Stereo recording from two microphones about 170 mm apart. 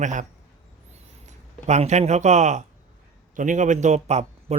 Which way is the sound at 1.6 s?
40° right (ahead or behind).